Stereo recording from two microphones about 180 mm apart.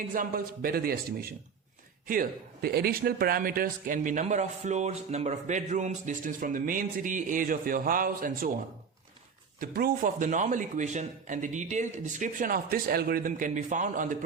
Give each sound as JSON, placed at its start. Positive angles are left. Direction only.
{"t": 0.1, "sound": "a man's voice", "side_deg": -50}
{"t": 9.6, "sound": "a man's voice", "side_deg": -55}